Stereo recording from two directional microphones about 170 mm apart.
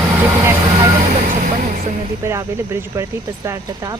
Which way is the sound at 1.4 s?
50° right (ahead or behind).